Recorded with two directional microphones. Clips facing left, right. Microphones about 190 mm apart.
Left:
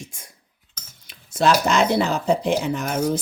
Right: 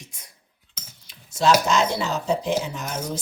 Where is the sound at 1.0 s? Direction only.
55° left (ahead or behind).